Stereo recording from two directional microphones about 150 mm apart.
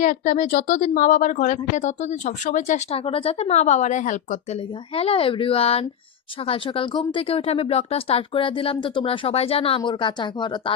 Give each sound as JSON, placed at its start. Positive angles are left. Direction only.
{"t": 0.0, "sound": "speech", "side_deg": 60}
{"t": 4.9, "sound": "speech", "side_deg": 40}